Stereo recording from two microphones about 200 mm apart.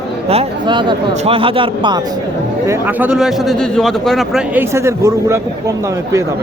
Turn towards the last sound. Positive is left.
turn(degrees=-15)  # may be behind; listen again after turning